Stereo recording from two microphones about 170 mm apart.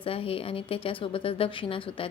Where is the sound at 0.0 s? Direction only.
35° left (ahead or behind).